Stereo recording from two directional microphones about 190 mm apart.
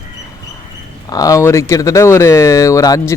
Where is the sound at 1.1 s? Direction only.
20° left (ahead or behind).